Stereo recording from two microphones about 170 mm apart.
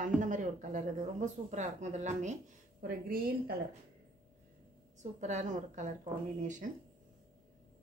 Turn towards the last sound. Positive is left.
turn(degrees=-45)  # may be behind; listen again after turning